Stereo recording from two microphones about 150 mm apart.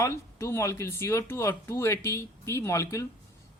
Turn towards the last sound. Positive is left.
turn(degrees=20)  # may be behind; listen again after turning